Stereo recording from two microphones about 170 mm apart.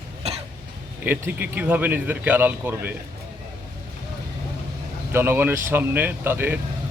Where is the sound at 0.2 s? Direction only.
35° right (ahead or behind).